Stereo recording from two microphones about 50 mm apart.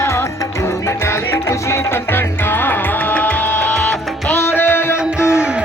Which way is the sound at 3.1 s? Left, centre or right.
Left.